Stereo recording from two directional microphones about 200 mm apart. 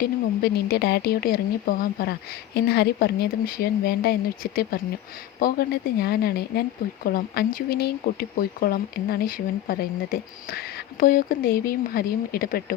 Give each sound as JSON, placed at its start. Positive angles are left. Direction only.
{"t": 0.0, "sound": "speech", "side_deg": 50}